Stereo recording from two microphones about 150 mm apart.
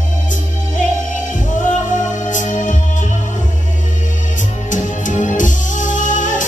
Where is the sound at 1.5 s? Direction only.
55° left (ahead or behind).